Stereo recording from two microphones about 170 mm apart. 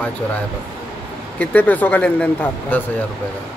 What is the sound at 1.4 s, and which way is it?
Speech, 10° left (ahead or behind).